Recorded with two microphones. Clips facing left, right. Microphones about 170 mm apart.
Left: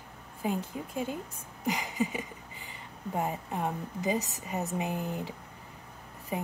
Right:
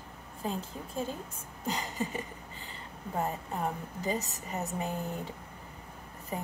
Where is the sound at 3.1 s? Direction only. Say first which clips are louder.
Left 1 dB; 15° left (ahead or behind).